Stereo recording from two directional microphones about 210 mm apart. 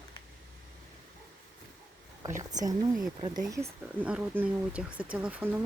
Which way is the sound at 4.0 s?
5° right (ahead or behind).